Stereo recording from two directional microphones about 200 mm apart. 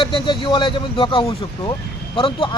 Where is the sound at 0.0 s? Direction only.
25° left (ahead or behind).